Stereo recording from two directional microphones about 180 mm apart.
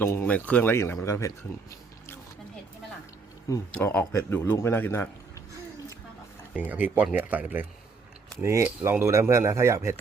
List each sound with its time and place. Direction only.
0.0 s a man's voice: 15° left (ahead or behind)
3.5 s a man's voice: 10° left (ahead or behind)
6.5 s speech: 10° right (ahead or behind)